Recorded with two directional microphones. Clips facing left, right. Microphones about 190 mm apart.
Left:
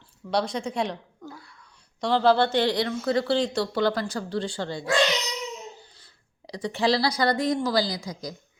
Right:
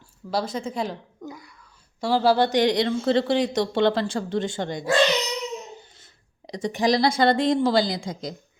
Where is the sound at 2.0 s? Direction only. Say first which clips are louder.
Right 1 dB; 5° right (ahead or behind).